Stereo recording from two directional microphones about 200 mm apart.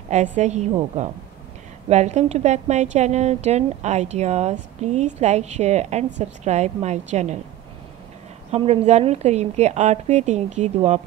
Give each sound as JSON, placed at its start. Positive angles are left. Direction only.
{"t": 0.4, "sound": "a woman's voice", "side_deg": -35}
{"t": 8.5, "sound": "a woman's voice", "side_deg": -30}